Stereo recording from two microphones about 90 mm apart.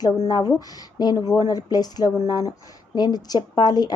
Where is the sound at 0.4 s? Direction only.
45° left (ahead or behind).